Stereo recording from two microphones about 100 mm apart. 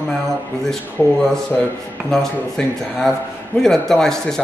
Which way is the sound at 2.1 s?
5° left (ahead or behind).